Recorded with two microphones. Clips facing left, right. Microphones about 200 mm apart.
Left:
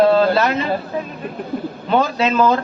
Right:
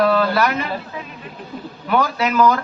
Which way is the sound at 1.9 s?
25° left (ahead or behind).